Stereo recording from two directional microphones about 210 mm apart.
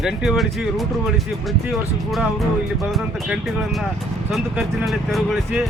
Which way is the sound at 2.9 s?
Centre (ahead or behind).